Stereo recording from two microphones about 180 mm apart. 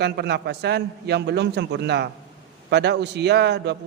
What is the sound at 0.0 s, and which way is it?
A man's voice, 65° right (ahead or behind).